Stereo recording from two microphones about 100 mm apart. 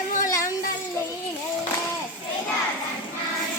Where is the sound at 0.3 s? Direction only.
30° left (ahead or behind).